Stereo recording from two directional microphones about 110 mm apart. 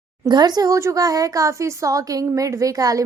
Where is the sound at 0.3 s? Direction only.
40° right (ahead or behind).